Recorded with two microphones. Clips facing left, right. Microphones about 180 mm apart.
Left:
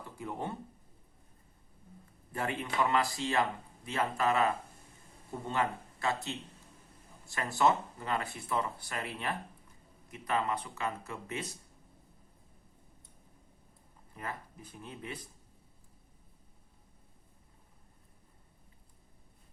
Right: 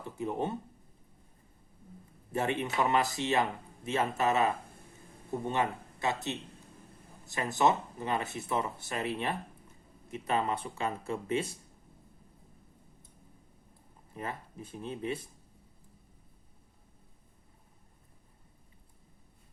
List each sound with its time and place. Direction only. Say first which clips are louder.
0.0 s speech: right 5 dB; 20° right (ahead or behind)
2.3 s speech: right 4 dB; 25° right (ahead or behind)
7.3 s speech: right 1 dB; 20° right (ahead or behind)
14.1 s speech: right 3 dB; 25° right (ahead or behind)